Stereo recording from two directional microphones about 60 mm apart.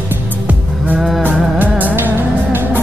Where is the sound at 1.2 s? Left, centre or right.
Right.